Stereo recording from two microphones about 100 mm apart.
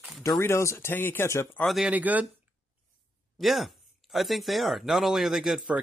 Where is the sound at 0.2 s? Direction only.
30° left (ahead or behind).